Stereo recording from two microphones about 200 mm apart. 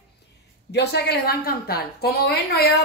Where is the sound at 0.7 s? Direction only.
55° left (ahead or behind).